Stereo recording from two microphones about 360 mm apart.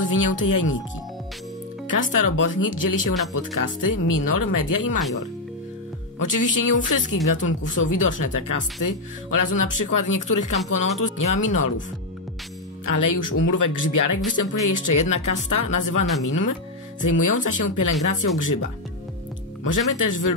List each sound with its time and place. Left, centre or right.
0.2 s speech: left
2.1 s speech: left
6.1 s speech: left
12.8 s speech: left